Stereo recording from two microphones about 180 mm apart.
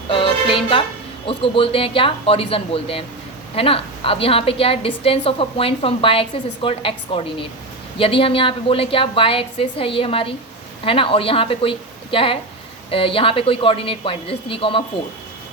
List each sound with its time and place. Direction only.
0.1 s music: 30° left (ahead or behind)
1.3 s a woman's voice: 30° left (ahead or behind)